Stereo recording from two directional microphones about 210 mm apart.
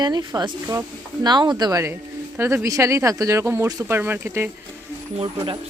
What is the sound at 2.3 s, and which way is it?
Speech, 10° right (ahead or behind).